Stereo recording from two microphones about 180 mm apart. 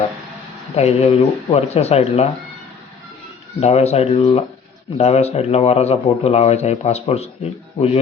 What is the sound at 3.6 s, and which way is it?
Speech, 35° left (ahead or behind).